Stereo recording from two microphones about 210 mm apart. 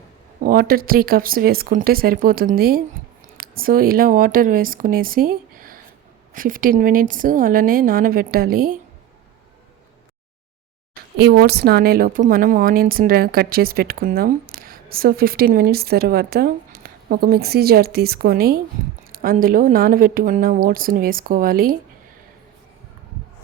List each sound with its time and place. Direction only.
0.4 s a woman's voice: 45° right (ahead or behind)
11.2 s a woman's voice: 50° right (ahead or behind)